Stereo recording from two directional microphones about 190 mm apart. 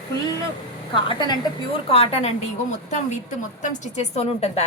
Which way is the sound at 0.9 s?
25° left (ahead or behind).